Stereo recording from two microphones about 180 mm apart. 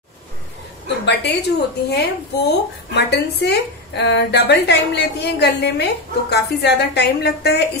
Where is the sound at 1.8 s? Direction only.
60° left (ahead or behind).